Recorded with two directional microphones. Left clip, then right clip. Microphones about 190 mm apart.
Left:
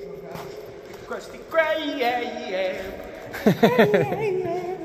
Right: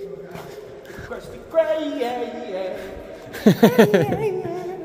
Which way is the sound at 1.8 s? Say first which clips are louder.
Even; 15° right (ahead or behind).